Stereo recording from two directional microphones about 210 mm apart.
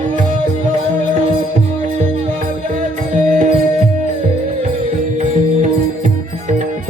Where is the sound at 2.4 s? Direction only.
40° right (ahead or behind).